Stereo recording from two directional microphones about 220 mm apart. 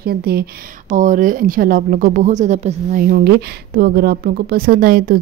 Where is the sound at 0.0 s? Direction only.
45° right (ahead or behind).